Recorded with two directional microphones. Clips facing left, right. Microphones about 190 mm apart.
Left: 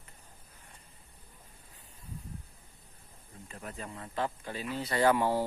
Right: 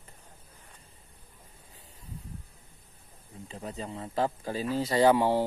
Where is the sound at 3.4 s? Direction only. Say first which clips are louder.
Right 5 dB; 20° right (ahead or behind).